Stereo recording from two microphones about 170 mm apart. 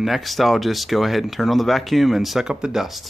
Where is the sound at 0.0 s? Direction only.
Centre (ahead or behind).